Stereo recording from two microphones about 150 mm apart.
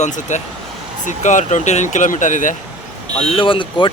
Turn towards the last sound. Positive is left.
turn(degrees=35)  # may be behind; listen again after turning